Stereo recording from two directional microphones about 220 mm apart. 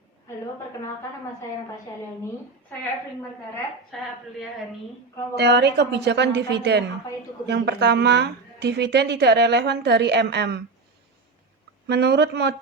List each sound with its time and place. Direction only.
3.9 s a woman's voice: centre (ahead or behind)
5.4 s speech: 50° right (ahead or behind)
11.9 s speech: 50° right (ahead or behind)